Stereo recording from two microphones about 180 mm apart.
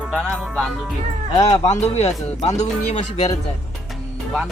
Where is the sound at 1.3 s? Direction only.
35° left (ahead or behind).